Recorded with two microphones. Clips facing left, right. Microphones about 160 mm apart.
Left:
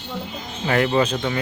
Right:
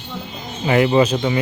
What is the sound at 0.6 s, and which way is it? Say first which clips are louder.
Speech: right 4 dB; 10° right (ahead or behind).